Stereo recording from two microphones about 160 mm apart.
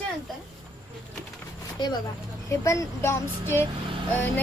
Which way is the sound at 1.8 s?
30° left (ahead or behind).